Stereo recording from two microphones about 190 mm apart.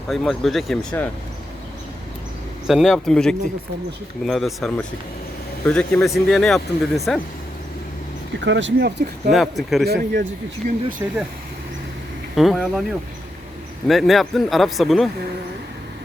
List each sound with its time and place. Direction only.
0.1 s speech: centre (ahead or behind)
2.6 s speech: centre (ahead or behind)
8.4 s speech: 70° right (ahead or behind)
9.3 s speech: centre (ahead or behind)
9.8 s speech: 55° right (ahead or behind)
11.0 s speech: 15° right (ahead or behind)
12.4 s speech: centre (ahead or behind)
13.8 s speech: centre (ahead or behind)